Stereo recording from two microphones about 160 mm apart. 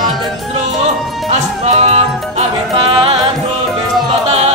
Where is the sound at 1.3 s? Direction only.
45° right (ahead or behind).